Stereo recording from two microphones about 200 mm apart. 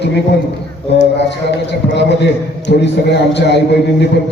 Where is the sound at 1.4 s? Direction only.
60° left (ahead or behind).